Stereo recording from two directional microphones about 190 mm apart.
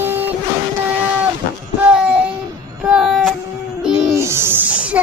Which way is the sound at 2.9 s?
5° right (ahead or behind).